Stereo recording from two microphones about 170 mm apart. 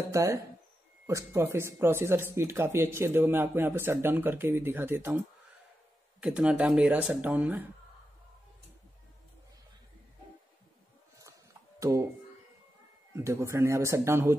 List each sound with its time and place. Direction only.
0.1 s speech: 15° right (ahead or behind)
6.2 s speech: 5° right (ahead or behind)
11.8 s speech: 15° right (ahead or behind)
13.1 s speech: 15° right (ahead or behind)